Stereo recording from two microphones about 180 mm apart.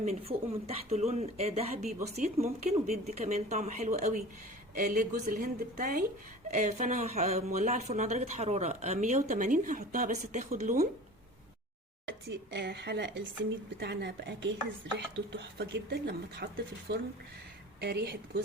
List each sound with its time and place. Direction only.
0.0 s a woman's voice: 35° right (ahead or behind)
12.0 s speech: 75° right (ahead or behind)